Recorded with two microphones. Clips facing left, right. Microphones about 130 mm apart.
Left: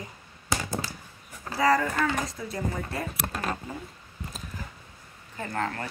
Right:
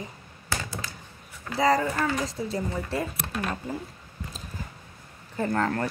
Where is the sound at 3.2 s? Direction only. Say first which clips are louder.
Right 1 dB; 40° left (ahead or behind).